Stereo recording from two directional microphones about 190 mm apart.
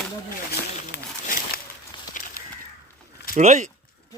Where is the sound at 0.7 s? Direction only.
40° left (ahead or behind).